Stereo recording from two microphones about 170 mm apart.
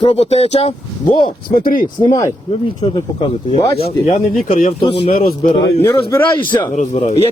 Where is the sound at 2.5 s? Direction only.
30° left (ahead or behind).